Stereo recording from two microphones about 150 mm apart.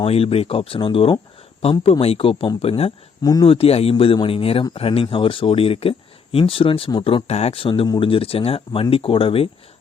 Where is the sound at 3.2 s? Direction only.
25° left (ahead or behind).